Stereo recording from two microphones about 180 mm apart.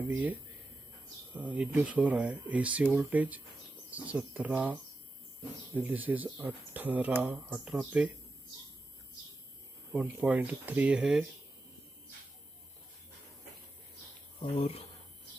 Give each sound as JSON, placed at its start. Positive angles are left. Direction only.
{"t": 0.1, "sound": "speech", "side_deg": -10}
{"t": 10.0, "sound": "speech", "side_deg": -10}
{"t": 14.4, "sound": "speech", "side_deg": 30}